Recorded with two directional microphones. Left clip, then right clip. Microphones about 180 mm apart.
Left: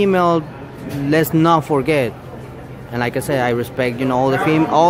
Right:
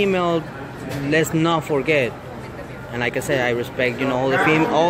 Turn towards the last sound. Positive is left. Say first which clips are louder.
# left 2 dB
turn(degrees=25)  # may be behind; listen again after turning